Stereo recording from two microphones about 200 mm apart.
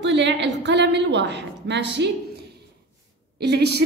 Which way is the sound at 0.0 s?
60° right (ahead or behind).